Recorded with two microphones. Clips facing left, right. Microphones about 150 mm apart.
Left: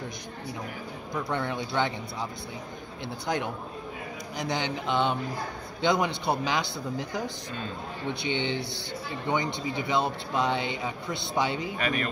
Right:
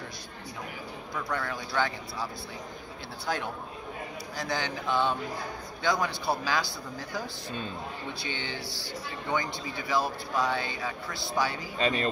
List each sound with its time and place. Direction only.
1.1 s speech: 25° left (ahead or behind)
4.4 s speech: 20° left (ahead or behind)
11.8 s speech: 25° right (ahead or behind)